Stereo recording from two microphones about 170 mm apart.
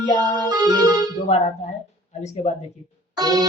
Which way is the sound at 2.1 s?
40° left (ahead or behind).